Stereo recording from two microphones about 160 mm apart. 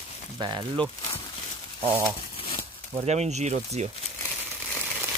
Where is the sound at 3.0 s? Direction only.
45° right (ahead or behind).